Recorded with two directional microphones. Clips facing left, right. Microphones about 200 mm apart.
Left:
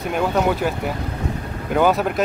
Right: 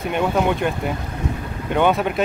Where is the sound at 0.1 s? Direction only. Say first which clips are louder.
Even; centre (ahead or behind).